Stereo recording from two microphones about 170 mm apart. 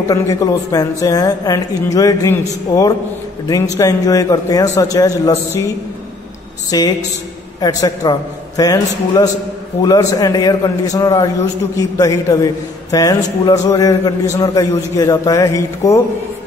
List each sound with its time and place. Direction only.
0.1 s a man's voice: 20° left (ahead or behind)
6.7 s a man's voice: 20° left (ahead or behind)